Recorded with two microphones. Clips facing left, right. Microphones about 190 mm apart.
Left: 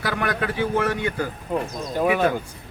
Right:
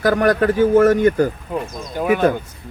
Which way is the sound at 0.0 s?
40° right (ahead or behind).